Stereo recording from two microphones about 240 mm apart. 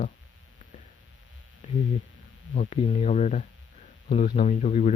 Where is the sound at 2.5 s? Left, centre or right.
Left.